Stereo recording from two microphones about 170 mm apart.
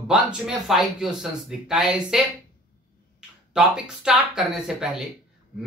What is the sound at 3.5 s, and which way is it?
Speech, 5° right (ahead or behind).